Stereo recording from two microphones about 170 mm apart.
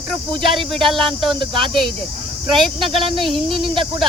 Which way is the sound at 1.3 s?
30° right (ahead or behind).